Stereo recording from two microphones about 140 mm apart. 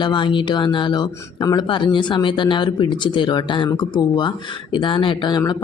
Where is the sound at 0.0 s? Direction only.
35° left (ahead or behind).